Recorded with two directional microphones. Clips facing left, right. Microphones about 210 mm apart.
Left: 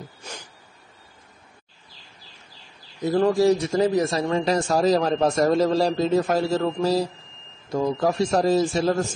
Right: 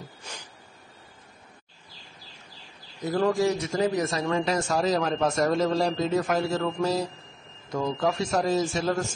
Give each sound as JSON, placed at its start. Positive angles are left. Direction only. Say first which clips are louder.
{"t": 3.1, "sound": "a man's voice", "louder": "left 5 dB", "side_deg": 30}